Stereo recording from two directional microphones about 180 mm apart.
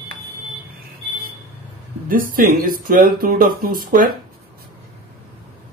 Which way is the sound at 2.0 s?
50° right (ahead or behind).